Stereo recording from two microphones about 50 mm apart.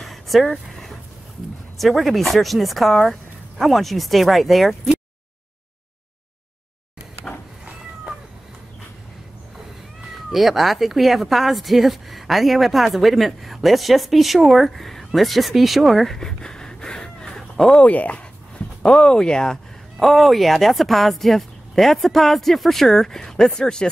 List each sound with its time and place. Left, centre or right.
0.0 s a sound: centre
1.8 s speech: centre
10.3 s speech: centre
16.2 s a sound: centre
17.7 s speech: left
20.0 s speech: centre